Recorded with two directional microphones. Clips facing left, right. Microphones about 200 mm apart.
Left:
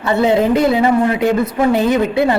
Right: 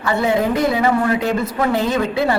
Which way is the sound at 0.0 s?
20° left (ahead or behind).